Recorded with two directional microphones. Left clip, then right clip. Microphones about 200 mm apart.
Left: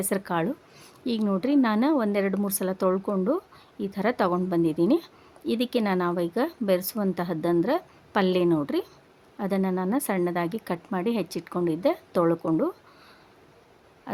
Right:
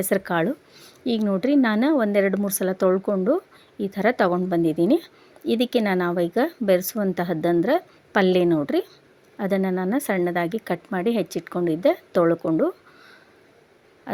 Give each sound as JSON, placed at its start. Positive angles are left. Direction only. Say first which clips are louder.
{"t": 0.0, "sound": "speech", "louder": "right 5 dB", "side_deg": -10}